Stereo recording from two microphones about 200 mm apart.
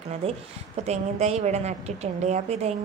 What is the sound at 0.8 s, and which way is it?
A woman's voice, 35° right (ahead or behind).